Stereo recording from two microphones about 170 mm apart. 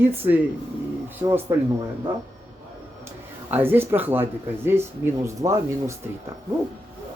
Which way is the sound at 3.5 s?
10° right (ahead or behind).